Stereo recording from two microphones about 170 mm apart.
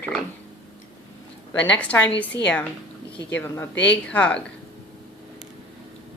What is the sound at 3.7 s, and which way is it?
Speech, 90° left.